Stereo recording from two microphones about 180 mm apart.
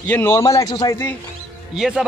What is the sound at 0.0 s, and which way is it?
A man's voice, 10° left (ahead or behind).